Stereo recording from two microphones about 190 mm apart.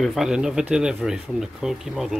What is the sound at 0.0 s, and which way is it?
Speech, centre (ahead or behind).